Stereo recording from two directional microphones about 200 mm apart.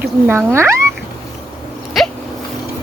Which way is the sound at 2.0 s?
Centre (ahead or behind).